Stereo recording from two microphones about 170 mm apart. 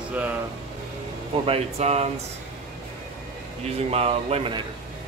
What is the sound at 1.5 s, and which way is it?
Speech, 40° right (ahead or behind).